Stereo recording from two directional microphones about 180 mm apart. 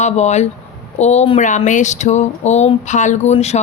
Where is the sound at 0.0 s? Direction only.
40° left (ahead or behind).